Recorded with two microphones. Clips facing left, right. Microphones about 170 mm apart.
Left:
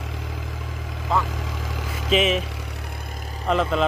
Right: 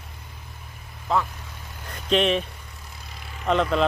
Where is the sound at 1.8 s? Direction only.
90° left.